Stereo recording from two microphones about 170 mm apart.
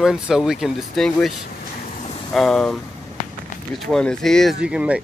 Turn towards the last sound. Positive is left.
turn(degrees=-5)  # may be behind; listen again after turning